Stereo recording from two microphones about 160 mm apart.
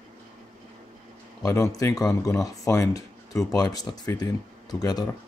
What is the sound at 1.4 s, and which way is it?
Speech, 20° left (ahead or behind).